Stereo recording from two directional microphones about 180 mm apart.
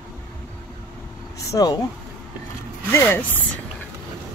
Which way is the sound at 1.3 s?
20° left (ahead or behind).